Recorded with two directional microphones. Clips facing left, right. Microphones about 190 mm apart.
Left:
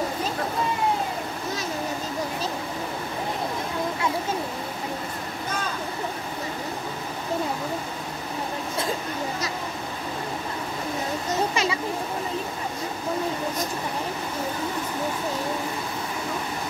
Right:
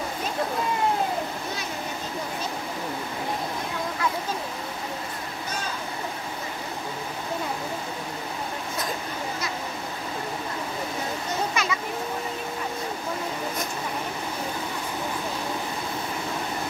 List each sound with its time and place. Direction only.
11.5 s children playing: 30° left (ahead or behind)